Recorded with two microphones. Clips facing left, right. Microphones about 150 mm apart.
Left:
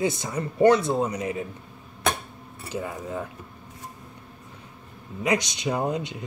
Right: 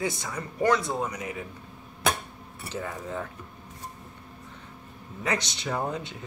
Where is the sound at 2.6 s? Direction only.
10° left (ahead or behind).